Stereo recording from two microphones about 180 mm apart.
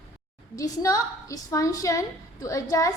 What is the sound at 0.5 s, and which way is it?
A woman's voice, 20° left (ahead or behind).